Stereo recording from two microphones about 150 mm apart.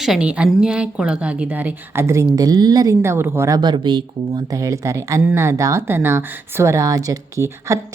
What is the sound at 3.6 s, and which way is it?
A woman's voice, 30° right (ahead or behind).